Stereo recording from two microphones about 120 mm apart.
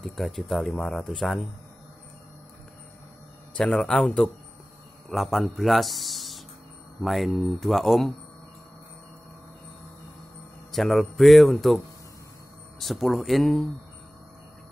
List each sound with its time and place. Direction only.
0.0 s speech: centre (ahead or behind)
3.5 s speech: 10° left (ahead or behind)
10.7 s speech: centre (ahead or behind)